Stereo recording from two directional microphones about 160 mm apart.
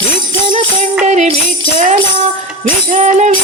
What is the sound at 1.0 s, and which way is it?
Music, 45° right (ahead or behind).